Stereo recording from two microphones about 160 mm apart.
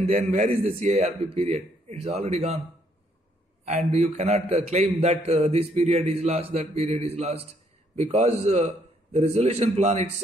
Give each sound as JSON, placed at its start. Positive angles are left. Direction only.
{"t": 0.1, "sound": "a man's voice", "side_deg": -50}
{"t": 3.6, "sound": "a man's voice", "side_deg": -45}